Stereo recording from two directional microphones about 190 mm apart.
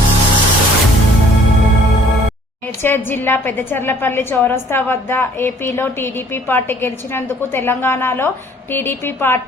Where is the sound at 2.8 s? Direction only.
10° left (ahead or behind).